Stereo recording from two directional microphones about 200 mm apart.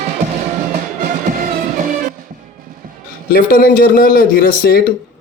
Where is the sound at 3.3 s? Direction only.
45° left (ahead or behind).